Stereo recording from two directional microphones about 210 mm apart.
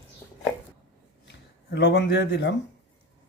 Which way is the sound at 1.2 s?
55° left (ahead or behind).